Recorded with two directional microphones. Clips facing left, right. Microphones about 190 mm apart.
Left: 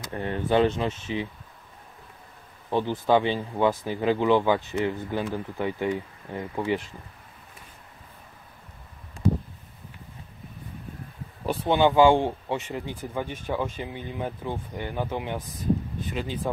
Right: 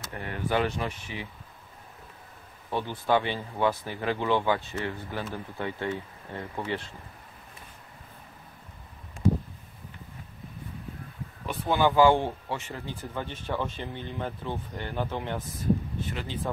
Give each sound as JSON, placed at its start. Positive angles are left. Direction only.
{"t": 0.1, "sound": "speech", "side_deg": 25}
{"t": 2.7, "sound": "speech", "side_deg": 15}
{"t": 11.6, "sound": "speech", "side_deg": 20}